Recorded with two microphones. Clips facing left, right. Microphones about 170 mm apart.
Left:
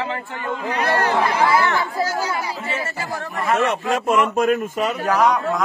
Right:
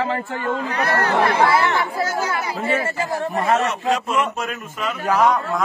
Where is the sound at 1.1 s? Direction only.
70° right (ahead or behind).